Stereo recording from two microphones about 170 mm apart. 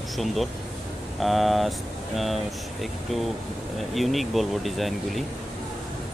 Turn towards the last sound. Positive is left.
turn(degrees=0)  # may be behind; listen again after turning